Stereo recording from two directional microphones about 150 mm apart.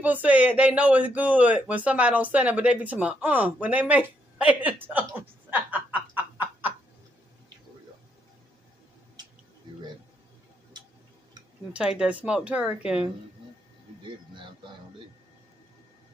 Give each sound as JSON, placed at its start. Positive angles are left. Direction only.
{"t": 0.0, "sound": "speech", "side_deg": -10}
{"t": 5.5, "sound": "snicker", "side_deg": -10}
{"t": 11.7, "sound": "speech", "side_deg": -5}
{"t": 14.0, "sound": "speech", "side_deg": -30}